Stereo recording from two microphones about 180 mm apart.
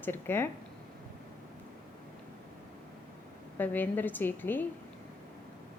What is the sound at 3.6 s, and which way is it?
A woman's voice, 10° left (ahead or behind).